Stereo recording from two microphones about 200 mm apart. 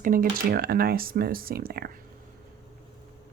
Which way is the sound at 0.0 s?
45° right (ahead or behind).